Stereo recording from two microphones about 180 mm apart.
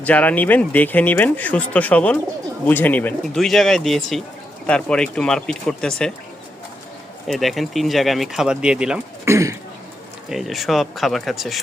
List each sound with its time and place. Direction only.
0.0 s speech: 10° left (ahead or behind)
7.3 s speech: centre (ahead or behind)
9.2 s speech: 15° right (ahead or behind)
10.2 s speech: centre (ahead or behind)